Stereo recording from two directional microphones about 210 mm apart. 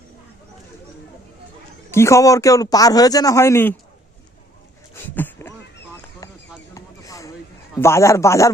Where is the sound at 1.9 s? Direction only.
15° left (ahead or behind).